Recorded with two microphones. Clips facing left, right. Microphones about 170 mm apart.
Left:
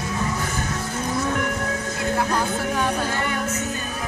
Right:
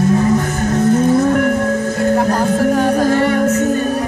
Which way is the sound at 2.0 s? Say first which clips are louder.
Right 8 dB; 45° right (ahead or behind).